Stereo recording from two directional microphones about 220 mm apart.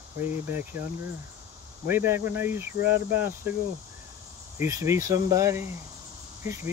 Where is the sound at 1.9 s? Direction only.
10° right (ahead or behind).